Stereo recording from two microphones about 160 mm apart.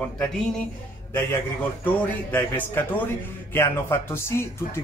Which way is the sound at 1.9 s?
10° left (ahead or behind).